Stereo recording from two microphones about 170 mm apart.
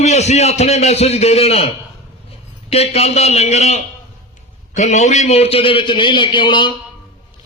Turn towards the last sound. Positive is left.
turn(degrees=30)  # may be behind; listen again after turning